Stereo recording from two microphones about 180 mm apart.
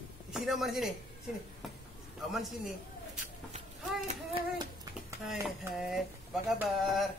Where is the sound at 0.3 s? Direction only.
Centre (ahead or behind).